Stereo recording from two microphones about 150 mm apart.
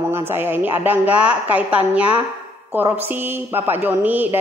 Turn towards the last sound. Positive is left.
turn(degrees=-10)  # may be behind; listen again after turning